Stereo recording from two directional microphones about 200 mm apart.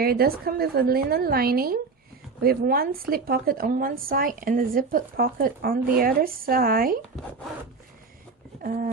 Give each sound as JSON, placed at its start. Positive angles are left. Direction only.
{"t": 0.0, "sound": "a woman's voice", "side_deg": -50}
{"t": 8.6, "sound": "a woman's voice", "side_deg": -45}